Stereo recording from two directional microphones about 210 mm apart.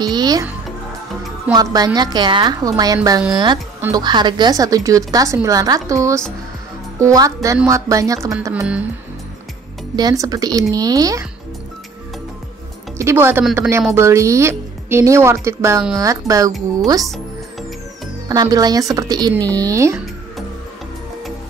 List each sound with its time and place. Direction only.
0.1 s a woman's voice: 20° right (ahead or behind)
1.5 s a woman's voice: 15° right (ahead or behind)
9.9 s a woman's voice: 15° right (ahead or behind)
12.9 s a woman's voice: 10° right (ahead or behind)
18.3 s a woman's voice: 20° right (ahead or behind)
19.3 s speech: 10° left (ahead or behind)
19.6 s a woman's voice: 15° right (ahead or behind)